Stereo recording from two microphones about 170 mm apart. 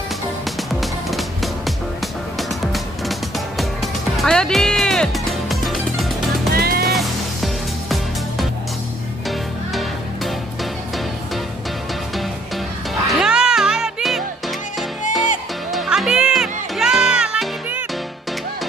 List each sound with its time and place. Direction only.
0.7 s music: centre (ahead or behind)
6.5 s music: 60° right (ahead or behind)
6.9 s music: centre (ahead or behind)
9.8 s music: centre (ahead or behind)
13.0 s music: centre (ahead or behind)
15.7 s music: centre (ahead or behind)